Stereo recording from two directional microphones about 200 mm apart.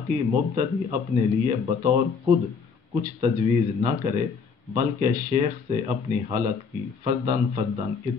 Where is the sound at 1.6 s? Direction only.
20° right (ahead or behind).